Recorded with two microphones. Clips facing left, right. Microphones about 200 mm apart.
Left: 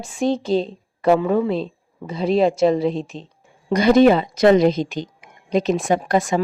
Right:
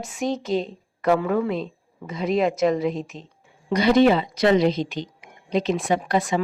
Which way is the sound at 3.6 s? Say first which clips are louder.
Left 4 dB; 45° left (ahead or behind).